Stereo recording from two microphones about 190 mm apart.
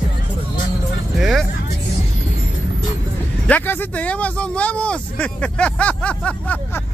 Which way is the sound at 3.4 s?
10° left (ahead or behind).